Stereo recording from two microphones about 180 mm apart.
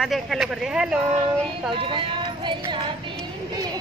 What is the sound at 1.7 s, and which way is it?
Speech, 30° right (ahead or behind).